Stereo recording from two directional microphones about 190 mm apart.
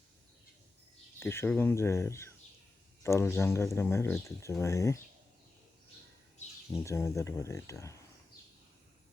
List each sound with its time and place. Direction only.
1.2 s speech: 10° left (ahead or behind)
6.8 s speech: 15° left (ahead or behind)